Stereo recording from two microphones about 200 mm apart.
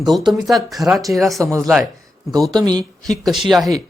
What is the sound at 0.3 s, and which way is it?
Speech, centre (ahead or behind).